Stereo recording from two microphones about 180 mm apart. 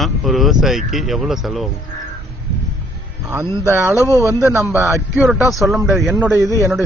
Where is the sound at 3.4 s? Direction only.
15° right (ahead or behind).